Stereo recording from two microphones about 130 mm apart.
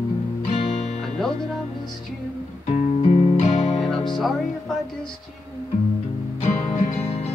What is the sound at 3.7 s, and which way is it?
Music, centre (ahead or behind).